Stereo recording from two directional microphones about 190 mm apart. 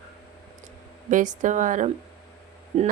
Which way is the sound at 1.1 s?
40° right (ahead or behind).